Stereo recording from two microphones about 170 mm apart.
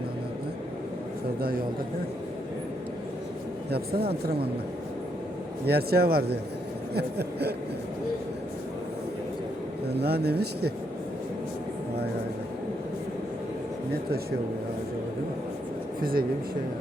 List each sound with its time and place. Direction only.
1.4 s speech: 60° right (ahead or behind)
3.7 s speech: 65° right (ahead or behind)
4.0 s a woman's voice: 35° right (ahead or behind)
5.6 s speech: 65° right (ahead or behind)
10.0 s speech: 70° right (ahead or behind)
16.0 s speech: 60° right (ahead or behind)